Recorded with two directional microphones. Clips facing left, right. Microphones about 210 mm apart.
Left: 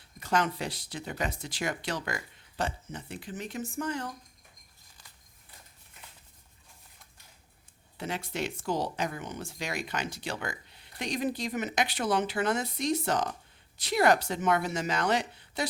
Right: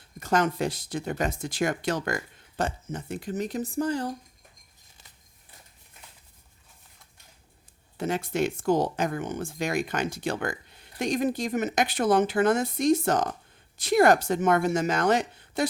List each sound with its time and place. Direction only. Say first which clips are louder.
0.2 s speech: right 5 dB; 45° right (ahead or behind)
7.9 s speech: right 7 dB; 45° right (ahead or behind)